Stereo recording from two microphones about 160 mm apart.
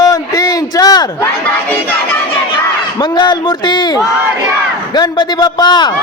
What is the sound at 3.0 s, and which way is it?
Speech, 30° left (ahead or behind).